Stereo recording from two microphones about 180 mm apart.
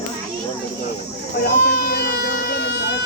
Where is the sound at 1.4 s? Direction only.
60° left (ahead or behind).